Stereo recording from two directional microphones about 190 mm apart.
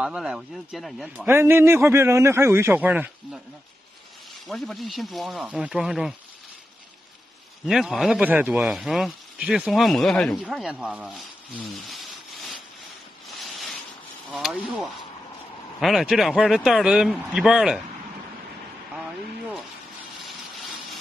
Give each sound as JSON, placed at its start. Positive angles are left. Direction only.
{"t": 0.0, "sound": "a man's voice", "side_deg": -5}
{"t": 4.5, "sound": "speech", "side_deg": 0}
{"t": 7.6, "sound": "speech", "side_deg": 0}
{"t": 11.1, "sound": "rub", "side_deg": 5}
{"t": 13.4, "sound": "a sound", "side_deg": 0}
{"t": 14.3, "sound": "speech", "side_deg": 0}
{"t": 20.2, "sound": "a sound", "side_deg": 0}